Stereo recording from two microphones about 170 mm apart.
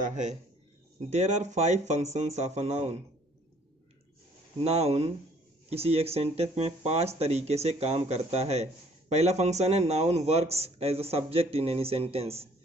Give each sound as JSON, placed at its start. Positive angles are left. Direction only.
{"t": 0.0, "sound": "a man's voice", "side_deg": -45}
{"t": 4.6, "sound": "a man's voice", "side_deg": -40}